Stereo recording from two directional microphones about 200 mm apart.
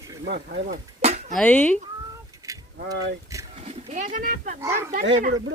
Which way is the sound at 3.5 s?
30° right (ahead or behind).